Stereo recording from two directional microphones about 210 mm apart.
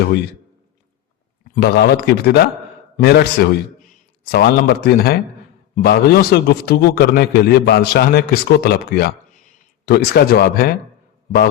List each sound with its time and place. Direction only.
1.5 s a man's voice: 50° left (ahead or behind)